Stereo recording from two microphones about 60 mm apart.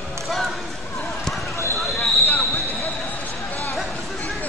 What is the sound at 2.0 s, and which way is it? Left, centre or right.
Basketball bounce, left.